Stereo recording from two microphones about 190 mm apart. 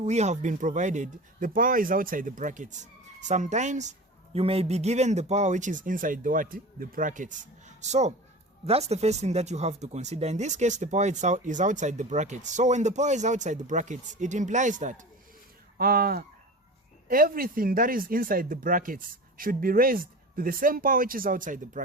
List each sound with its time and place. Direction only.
0.0 s speech: 35° right (ahead or behind)